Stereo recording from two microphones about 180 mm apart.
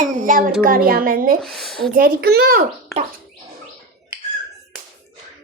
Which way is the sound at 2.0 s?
60° right (ahead or behind).